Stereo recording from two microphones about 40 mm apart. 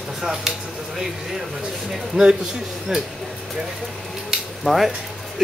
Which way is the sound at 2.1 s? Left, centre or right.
Right.